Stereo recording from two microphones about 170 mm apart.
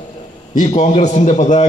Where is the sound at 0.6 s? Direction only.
45° left (ahead or behind).